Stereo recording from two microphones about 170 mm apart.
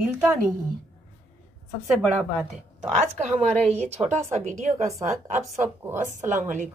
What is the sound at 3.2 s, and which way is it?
A woman's voice, 40° right (ahead or behind).